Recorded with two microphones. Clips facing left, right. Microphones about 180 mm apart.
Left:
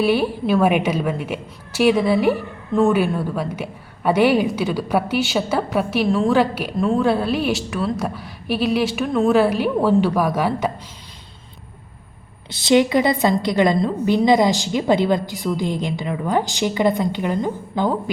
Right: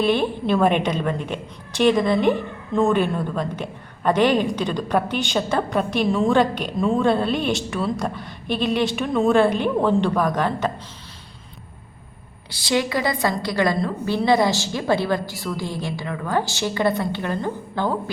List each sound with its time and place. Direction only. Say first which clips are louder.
0.0 s a woman's voice: left 2 dB; 5° left (ahead or behind)
12.5 s a woman's voice: left 7 dB; 25° left (ahead or behind)